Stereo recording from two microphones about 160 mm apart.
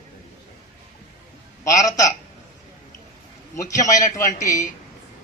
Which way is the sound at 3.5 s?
20° left (ahead or behind).